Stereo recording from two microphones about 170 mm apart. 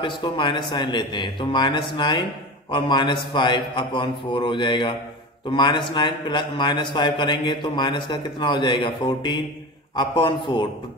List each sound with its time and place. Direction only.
0.0 s a man's voice: 30° left (ahead or behind)